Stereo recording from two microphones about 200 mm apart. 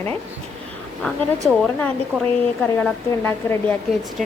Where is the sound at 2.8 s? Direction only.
10° left (ahead or behind).